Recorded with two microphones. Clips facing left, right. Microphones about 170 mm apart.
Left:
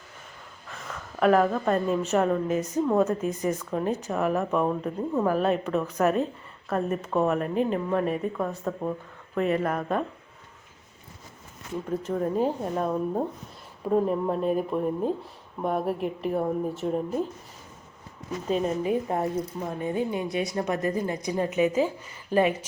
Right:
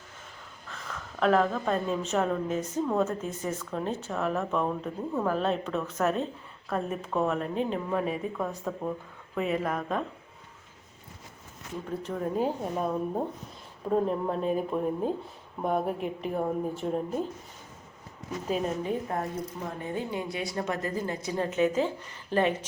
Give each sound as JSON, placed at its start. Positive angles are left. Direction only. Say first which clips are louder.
{"t": 1.2, "sound": "a woman's voice", "louder": "left 3 dB", "side_deg": 5}
{"t": 12.1, "sound": "speech", "louder": "left 3 dB", "side_deg": 0}
{"t": 18.4, "sound": "speech", "louder": "left 3 dB", "side_deg": -5}
{"t": 18.8, "sound": "a woman's voice", "louder": "left 5 dB", "side_deg": 15}